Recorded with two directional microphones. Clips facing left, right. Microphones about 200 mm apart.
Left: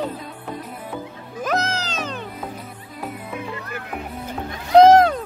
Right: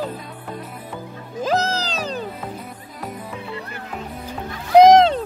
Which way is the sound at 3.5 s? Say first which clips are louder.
Even; 30° right (ahead or behind).